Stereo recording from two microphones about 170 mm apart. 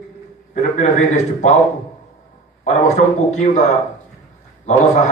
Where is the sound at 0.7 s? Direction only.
45° left (ahead or behind).